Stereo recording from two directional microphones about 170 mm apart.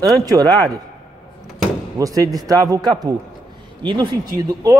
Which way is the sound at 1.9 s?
20° right (ahead or behind).